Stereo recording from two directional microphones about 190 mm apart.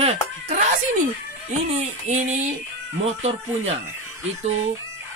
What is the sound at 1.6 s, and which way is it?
Speech, 35° right (ahead or behind).